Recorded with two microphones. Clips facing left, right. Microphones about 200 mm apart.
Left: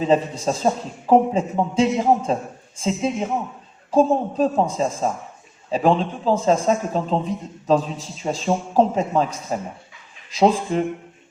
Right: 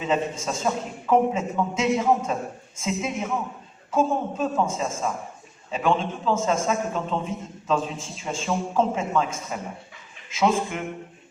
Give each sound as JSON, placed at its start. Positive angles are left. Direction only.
{"t": 0.0, "sound": "a man's voice", "side_deg": 35}